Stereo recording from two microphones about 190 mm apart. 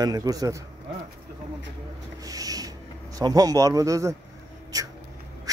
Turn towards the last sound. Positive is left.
turn(degrees=-20)  # may be behind; listen again after turning